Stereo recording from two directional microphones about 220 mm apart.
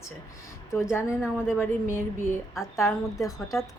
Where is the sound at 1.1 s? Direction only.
5° right (ahead or behind).